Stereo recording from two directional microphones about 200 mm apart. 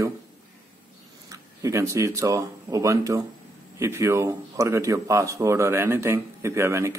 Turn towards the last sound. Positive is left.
turn(degrees=-15)  # may be behind; listen again after turning